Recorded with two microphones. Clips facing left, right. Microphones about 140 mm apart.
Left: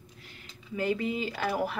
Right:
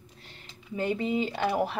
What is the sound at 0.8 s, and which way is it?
Speech, 20° right (ahead or behind).